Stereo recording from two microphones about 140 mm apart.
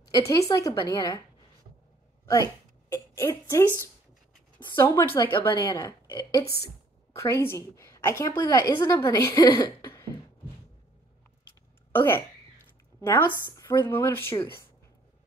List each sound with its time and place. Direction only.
0.0 s a woman's voice: 25° left (ahead or behind)
2.2 s speech: 20° left (ahead or behind)
5.5 s a woman's voice: 35° left (ahead or behind)
9.8 s cough: 20° left (ahead or behind)
11.9 s speech: 15° left (ahead or behind)